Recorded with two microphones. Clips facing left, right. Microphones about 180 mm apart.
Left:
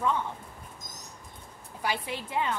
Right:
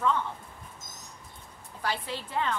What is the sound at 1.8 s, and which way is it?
Speech, 15° left (ahead or behind).